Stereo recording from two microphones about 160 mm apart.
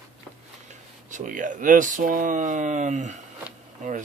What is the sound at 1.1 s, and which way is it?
Speech, 55° right (ahead or behind).